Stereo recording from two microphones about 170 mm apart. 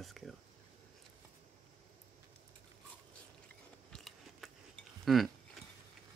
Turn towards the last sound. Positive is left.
turn(degrees=0)  # may be behind; listen again after turning